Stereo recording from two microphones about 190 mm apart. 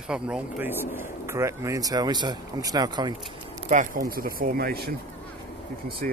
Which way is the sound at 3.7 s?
45° right (ahead or behind).